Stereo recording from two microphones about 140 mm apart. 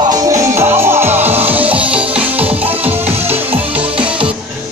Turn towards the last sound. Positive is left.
turn(degrees=-10)  # may be behind; listen again after turning